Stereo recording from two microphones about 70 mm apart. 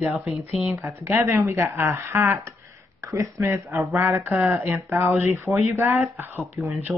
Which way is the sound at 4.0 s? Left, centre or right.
Right.